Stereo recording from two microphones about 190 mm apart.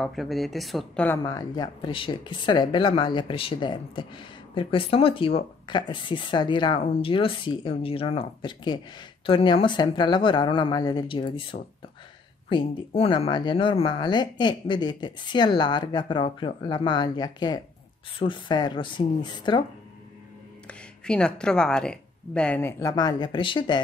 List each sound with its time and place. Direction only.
0.0 s speech: centre (ahead or behind); by 19.6 s 25° left (ahead or behind)
20.6 s speech: 5° left (ahead or behind); by 23.8 s 25° left (ahead or behind)